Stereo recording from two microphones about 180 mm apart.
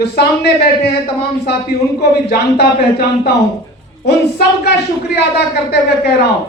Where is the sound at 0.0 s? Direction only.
65° left (ahead or behind).